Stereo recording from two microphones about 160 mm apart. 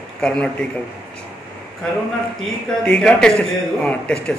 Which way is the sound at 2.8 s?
5° left (ahead or behind).